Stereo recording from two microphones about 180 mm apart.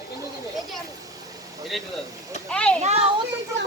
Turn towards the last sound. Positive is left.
turn(degrees=-35)  # may be behind; listen again after turning